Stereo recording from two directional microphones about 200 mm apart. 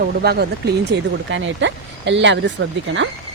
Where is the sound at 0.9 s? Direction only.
65° right (ahead or behind).